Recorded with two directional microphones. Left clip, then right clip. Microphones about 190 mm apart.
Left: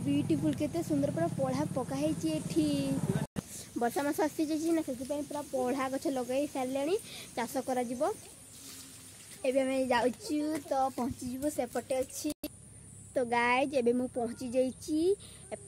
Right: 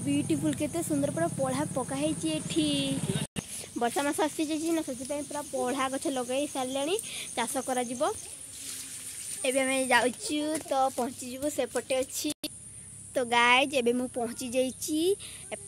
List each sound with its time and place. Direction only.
0.5 s speech: 15° right (ahead or behind)
2.5 s speech: 5° right (ahead or behind)
2.9 s speech: 25° right (ahead or behind)
3.7 s speech: 5° right (ahead or behind)
9.4 s speech: 5° right (ahead or behind)